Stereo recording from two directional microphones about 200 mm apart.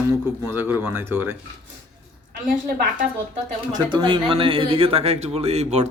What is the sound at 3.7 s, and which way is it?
Speech, 20° right (ahead or behind).